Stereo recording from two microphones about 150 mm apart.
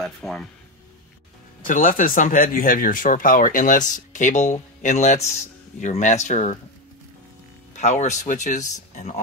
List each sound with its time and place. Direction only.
0.0 s speech: centre (ahead or behind)
1.7 s speech: 65° left (ahead or behind)
7.7 s speech: 50° left (ahead or behind)